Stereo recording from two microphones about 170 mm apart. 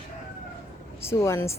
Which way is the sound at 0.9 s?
15° left (ahead or behind).